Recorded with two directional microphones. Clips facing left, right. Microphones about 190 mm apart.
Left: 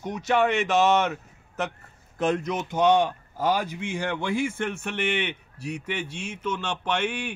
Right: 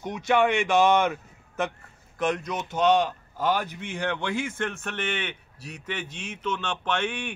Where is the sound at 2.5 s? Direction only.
10° left (ahead or behind).